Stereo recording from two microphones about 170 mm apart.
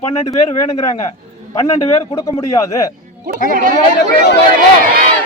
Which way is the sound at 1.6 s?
20° left (ahead or behind).